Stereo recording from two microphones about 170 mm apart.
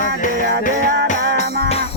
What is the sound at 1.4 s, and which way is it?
Music, 60° right (ahead or behind).